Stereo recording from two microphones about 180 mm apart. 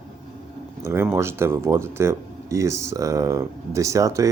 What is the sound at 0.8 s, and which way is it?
Speech, 15° right (ahead or behind).